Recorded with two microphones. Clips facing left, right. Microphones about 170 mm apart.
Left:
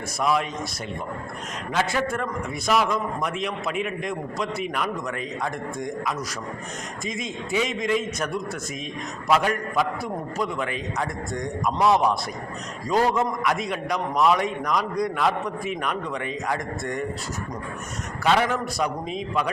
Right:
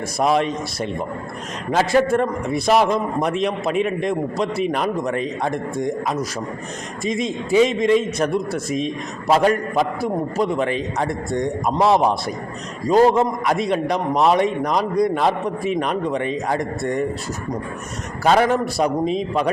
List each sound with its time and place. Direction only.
0.2 s a man's voice: 30° right (ahead or behind)
18.2 s a man's voice: 40° right (ahead or behind)